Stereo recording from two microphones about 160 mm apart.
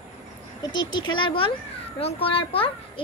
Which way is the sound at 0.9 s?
30° left (ahead or behind).